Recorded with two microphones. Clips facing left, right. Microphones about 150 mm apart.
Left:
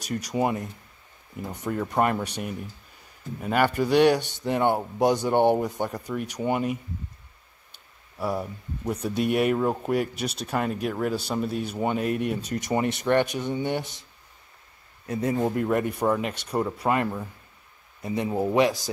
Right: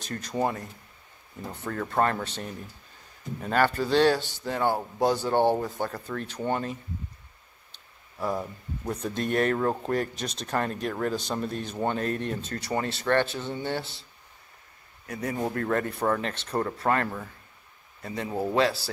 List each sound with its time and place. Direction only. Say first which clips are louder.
0.0 s speech: left 2 dB; 10° left (ahead or behind)
15.0 s a man's voice: left 5 dB; 25° left (ahead or behind)